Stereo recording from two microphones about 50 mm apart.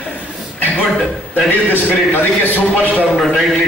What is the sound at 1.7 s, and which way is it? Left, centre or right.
A man's voice, left.